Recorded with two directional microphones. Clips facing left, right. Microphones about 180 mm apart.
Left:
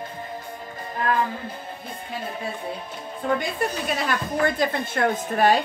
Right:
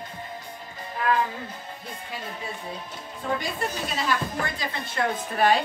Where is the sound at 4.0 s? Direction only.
55° left (ahead or behind).